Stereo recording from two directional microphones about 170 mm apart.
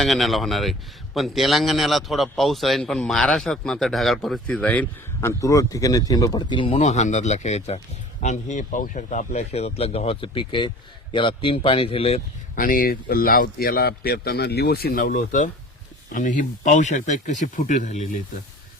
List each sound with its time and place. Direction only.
0.0 s a man's voice: centre (ahead or behind)
5.4 s speech: 20° left (ahead or behind); by 12.2 s 35° left (ahead or behind)
12.5 s a man's voice: 55° left (ahead or behind)